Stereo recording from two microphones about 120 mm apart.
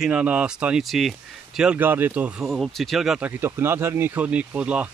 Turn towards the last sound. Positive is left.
turn(degrees=-10)  # may be behind; listen again after turning